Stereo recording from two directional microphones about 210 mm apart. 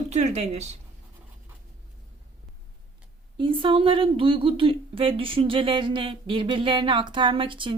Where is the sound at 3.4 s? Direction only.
25° right (ahead or behind).